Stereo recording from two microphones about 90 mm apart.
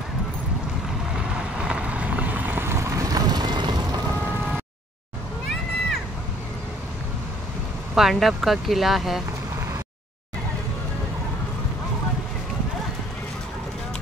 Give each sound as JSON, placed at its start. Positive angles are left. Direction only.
{"t": 1.1, "sound": "vehicle", "side_deg": -10}
{"t": 7.9, "sound": "speech", "side_deg": 0}